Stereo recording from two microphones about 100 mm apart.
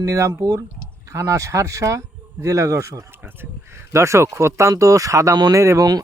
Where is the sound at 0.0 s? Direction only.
30° right (ahead or behind).